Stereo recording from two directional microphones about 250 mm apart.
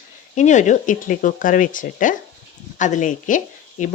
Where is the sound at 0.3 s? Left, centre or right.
Left.